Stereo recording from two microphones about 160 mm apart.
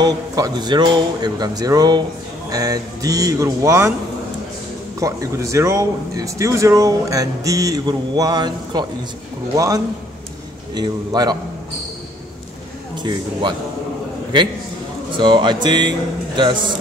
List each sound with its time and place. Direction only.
0.0 s speech: 25° right (ahead or behind)
5.0 s speech: 20° right (ahead or behind)
12.9 s speech: 30° right (ahead or behind)
15.1 s speech: 30° right (ahead or behind)